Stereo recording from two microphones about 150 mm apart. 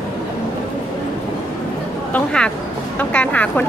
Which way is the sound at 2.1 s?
5° left (ahead or behind).